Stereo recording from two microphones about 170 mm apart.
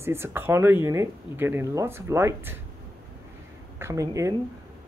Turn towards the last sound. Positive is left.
turn(degrees=-20)  # may be behind; listen again after turning